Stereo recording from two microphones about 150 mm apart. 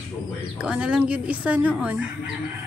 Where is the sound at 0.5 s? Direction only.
5° right (ahead or behind).